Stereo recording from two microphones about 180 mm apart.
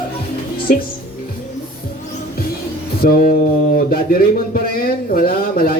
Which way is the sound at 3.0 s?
55° left (ahead or behind).